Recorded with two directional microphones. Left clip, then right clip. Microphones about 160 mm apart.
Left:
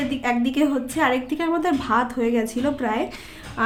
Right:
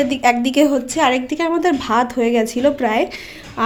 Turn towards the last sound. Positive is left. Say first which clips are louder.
# right 8 dB
turn(degrees=-25)  # may be behind; listen again after turning